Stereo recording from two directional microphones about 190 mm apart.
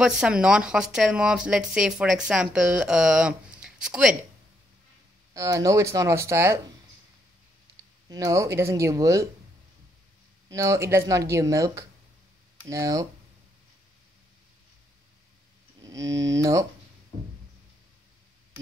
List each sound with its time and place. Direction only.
0.0 s speech: 5° right (ahead or behind)
5.3 s speech: 15° right (ahead or behind)
8.1 s speech: 15° right (ahead or behind)
10.5 s speech: 15° right (ahead or behind)
15.8 s speech: 15° right (ahead or behind)